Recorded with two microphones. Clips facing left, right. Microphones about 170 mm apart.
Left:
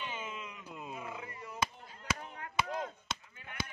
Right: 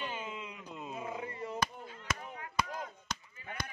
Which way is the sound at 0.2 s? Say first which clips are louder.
Right 1 dB; 20° right (ahead or behind).